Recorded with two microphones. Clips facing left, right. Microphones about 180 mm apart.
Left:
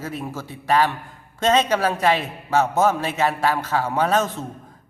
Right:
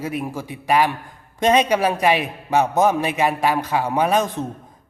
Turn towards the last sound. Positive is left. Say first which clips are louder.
# right 2 dB
turn(degrees=-15)  # may be behind; listen again after turning